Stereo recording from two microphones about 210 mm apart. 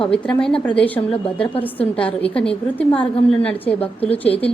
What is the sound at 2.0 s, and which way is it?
A woman's voice, 5° left (ahead or behind).